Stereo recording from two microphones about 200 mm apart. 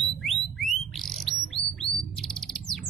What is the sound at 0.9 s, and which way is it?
Bird, centre (ahead or behind).